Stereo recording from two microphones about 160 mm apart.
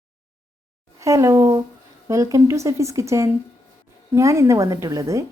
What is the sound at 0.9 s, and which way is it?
A woman's voice, 20° right (ahead or behind).